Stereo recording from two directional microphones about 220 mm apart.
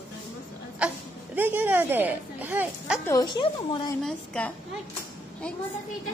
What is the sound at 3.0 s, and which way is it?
Speech, 15° left (ahead or behind).